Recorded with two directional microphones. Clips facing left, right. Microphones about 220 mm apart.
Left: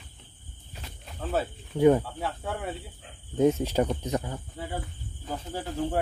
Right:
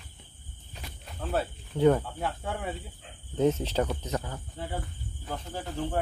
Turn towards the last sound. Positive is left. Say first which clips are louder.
# left 3 dB
turn(degrees=10)  # may be behind; listen again after turning